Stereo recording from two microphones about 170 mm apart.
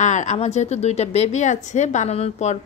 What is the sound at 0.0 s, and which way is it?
A woman's voice, 45° left (ahead or behind).